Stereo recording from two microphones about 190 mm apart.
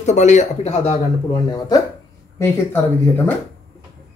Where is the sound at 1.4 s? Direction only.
20° left (ahead or behind).